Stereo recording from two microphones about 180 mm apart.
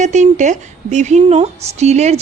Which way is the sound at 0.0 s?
40° right (ahead or behind).